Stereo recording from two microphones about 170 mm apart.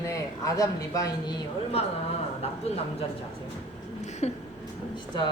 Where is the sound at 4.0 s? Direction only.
40° left (ahead or behind).